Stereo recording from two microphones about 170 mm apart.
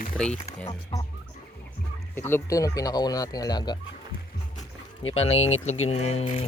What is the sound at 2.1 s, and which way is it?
Speech, 15° left (ahead or behind).